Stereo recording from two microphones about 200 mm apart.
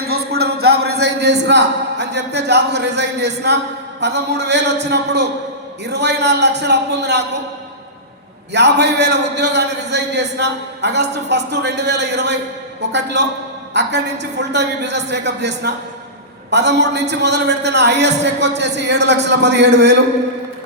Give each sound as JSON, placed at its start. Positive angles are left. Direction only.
{"t": 0.0, "sound": "a sound", "side_deg": -50}
{"t": 4.0, "sound": "a man's voice", "side_deg": -60}
{"t": 8.5, "sound": "a man's voice", "side_deg": -60}